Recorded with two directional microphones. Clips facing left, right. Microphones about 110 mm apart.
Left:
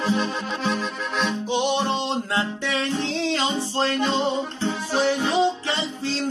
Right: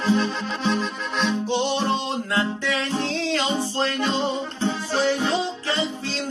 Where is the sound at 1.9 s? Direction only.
25° left (ahead or behind).